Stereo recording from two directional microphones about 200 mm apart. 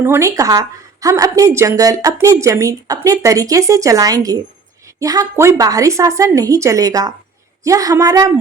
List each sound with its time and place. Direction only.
0.0 s a woman's voice: 15° right (ahead or behind)